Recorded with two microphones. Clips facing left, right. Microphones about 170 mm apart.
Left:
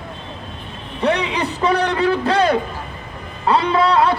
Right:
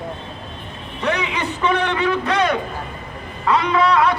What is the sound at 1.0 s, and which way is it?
A man's voice, 35° left (ahead or behind).